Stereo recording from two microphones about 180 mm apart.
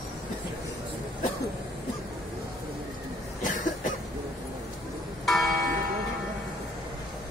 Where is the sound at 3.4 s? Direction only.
45° left (ahead or behind).